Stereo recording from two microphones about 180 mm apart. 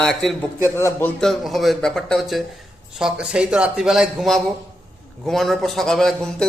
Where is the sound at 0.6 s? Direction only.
15° left (ahead or behind).